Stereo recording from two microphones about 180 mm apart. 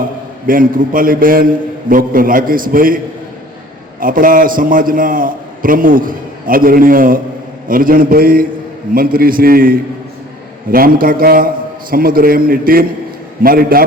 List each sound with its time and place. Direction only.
0.4 s a man's voice: 50° right (ahead or behind)
4.0 s a man's voice: 50° right (ahead or behind)